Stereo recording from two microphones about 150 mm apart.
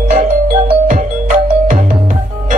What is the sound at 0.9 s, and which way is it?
Music, 60° right (ahead or behind).